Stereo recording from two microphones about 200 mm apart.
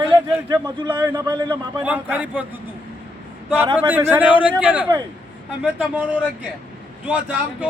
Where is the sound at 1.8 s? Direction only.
10° right (ahead or behind).